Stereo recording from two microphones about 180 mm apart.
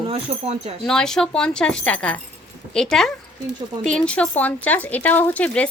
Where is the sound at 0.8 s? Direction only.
5° left (ahead or behind).